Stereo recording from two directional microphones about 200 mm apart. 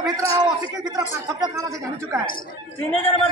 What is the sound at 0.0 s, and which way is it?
A man's voice, 15° right (ahead or behind).